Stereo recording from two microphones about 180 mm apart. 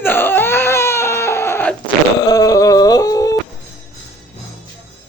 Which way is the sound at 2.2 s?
20° left (ahead or behind).